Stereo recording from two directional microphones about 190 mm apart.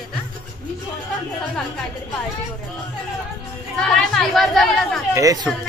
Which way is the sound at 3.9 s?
Centre (ahead or behind).